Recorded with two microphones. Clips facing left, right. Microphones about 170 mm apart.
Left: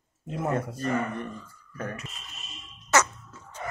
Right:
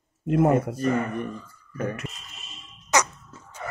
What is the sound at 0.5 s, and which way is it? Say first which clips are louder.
Speech: right 5 dB; 15° right (ahead or behind).